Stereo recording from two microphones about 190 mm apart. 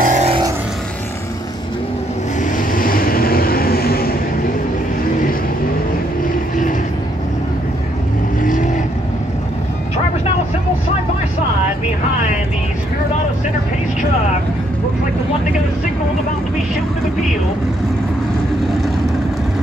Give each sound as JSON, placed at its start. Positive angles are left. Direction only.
{"t": 0.0, "sound": "vehicle", "side_deg": -40}
{"t": 2.7, "sound": "vehicle", "side_deg": 50}